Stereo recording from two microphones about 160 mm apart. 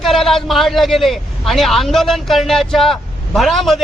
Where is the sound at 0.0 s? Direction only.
Centre (ahead or behind).